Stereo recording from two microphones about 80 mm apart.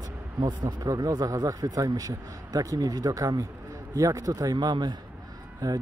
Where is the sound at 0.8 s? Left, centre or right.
Right.